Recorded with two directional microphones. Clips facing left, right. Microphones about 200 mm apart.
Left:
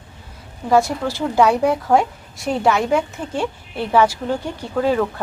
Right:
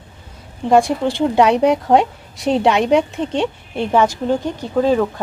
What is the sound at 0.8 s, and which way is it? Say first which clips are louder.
Speech: right 3 dB; centre (ahead or behind).